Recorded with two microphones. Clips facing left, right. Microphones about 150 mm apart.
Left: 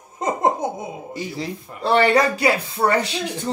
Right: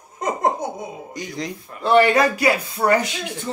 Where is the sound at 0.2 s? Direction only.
25° left (ahead or behind).